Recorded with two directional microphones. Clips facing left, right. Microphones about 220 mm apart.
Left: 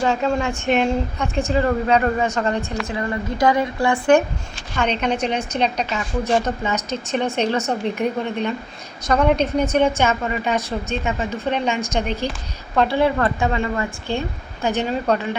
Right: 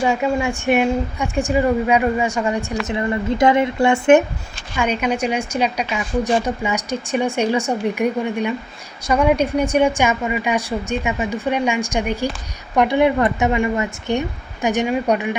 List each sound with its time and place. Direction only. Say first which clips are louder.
0.0 s a woman's voice: right 1 dB; 10° right (ahead or behind)
4.8 s a woman's voice: right 1 dB; 10° right (ahead or behind)